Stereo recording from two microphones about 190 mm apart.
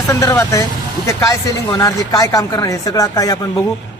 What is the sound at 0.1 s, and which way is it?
Speech, 15° left (ahead or behind).